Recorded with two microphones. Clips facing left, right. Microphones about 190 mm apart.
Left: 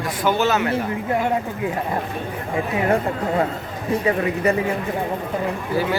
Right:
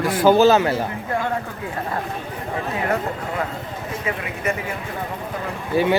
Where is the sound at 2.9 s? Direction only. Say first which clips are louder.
Left 4 dB; 30° left (ahead or behind).